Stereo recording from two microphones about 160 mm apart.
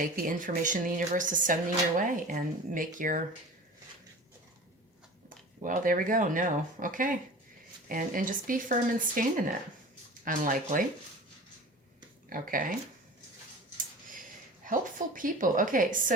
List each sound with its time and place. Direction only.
0.0 s speech: 55° right (ahead or behind)
5.6 s speech: 55° right (ahead or behind)
12.3 s speech: 60° right (ahead or behind)
13.7 s a sound: 55° right (ahead or behind)